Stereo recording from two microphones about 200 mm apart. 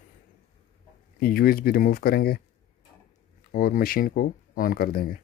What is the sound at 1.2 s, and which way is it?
Speech, 45° left (ahead or behind).